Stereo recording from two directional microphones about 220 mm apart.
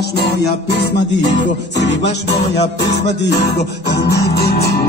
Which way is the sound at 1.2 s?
35° left (ahead or behind).